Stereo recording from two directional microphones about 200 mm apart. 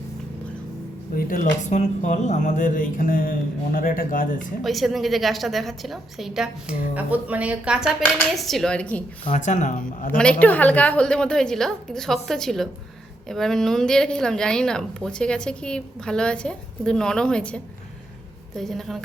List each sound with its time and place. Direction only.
1.1 s speech: 50° left (ahead or behind)
1.7 s speech: 35° left (ahead or behind)
4.6 s a woman's voice: centre (ahead or behind)
9.2 s speech: 35° left (ahead or behind)
10.4 s a woman's voice: 10° left (ahead or behind)